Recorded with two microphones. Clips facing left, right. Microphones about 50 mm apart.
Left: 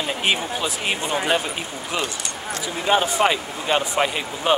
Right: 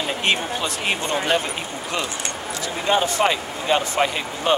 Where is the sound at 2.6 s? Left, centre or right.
Centre.